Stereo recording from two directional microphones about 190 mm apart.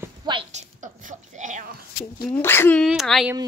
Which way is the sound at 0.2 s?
25° right (ahead or behind).